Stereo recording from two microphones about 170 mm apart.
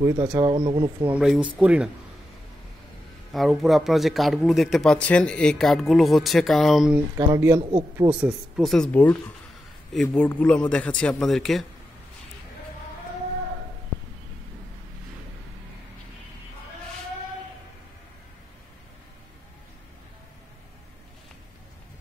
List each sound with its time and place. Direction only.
0.0 s speech: 20° right (ahead or behind)
1.0 s speech: 5° right (ahead or behind)
3.3 s speech: centre (ahead or behind)
7.2 s speech: 15° right (ahead or behind)
7.7 s speech: 30° right (ahead or behind)
8.2 s speech: centre (ahead or behind)
10.1 s speech: 5° left (ahead or behind)